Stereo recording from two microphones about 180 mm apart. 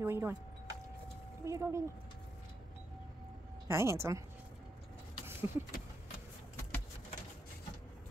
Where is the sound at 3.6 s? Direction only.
15° right (ahead or behind).